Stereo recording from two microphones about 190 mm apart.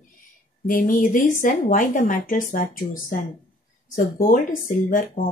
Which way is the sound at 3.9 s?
45° left (ahead or behind).